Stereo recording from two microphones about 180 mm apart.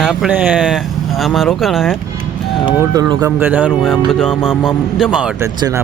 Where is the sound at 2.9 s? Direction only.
20° right (ahead or behind).